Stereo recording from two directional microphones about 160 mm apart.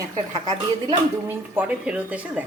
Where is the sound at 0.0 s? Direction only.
25° right (ahead or behind).